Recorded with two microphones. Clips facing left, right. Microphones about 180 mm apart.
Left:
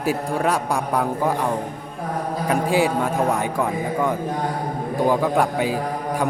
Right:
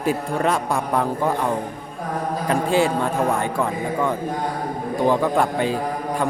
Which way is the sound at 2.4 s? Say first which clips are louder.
Even; 10° left (ahead or behind).